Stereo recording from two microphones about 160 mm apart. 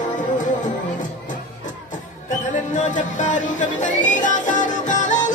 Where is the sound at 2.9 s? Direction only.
50° left (ahead or behind).